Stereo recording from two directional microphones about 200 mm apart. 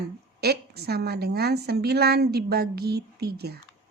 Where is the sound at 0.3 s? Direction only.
55° right (ahead or behind).